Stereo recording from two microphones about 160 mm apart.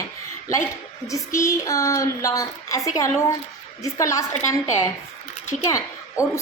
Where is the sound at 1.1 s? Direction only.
20° left (ahead or behind).